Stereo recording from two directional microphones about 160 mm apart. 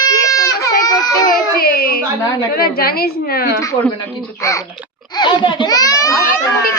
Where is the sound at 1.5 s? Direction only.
70° left (ahead or behind).